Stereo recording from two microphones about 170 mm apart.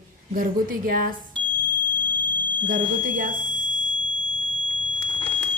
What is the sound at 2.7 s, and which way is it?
Speech, 50° right (ahead or behind).